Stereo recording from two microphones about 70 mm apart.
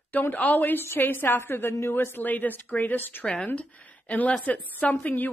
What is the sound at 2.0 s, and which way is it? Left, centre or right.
Speech, left.